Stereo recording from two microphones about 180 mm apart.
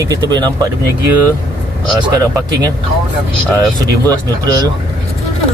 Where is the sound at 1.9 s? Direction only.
20° right (ahead or behind).